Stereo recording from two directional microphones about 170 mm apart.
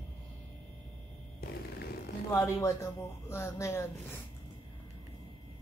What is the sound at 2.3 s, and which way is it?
Speech, 20° left (ahead or behind).